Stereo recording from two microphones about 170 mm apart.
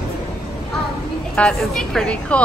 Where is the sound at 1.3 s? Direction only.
5° left (ahead or behind).